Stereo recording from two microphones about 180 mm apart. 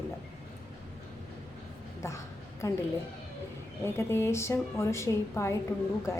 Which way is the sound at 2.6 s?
15° left (ahead or behind).